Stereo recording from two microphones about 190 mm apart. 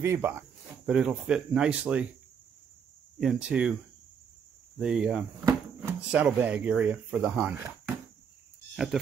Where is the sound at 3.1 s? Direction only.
5° right (ahead or behind).